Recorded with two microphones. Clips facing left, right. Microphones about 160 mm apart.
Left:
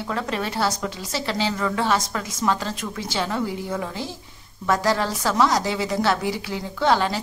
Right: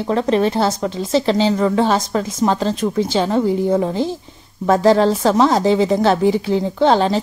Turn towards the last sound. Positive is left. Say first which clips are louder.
# right 6 dB
turn(degrees=-30)  # may be behind; listen again after turning